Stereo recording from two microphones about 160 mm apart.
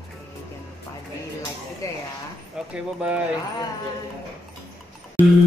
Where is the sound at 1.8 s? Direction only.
20° left (ahead or behind).